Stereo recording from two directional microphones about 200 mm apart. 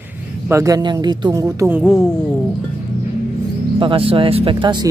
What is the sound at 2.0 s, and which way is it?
Speech, 5° left (ahead or behind).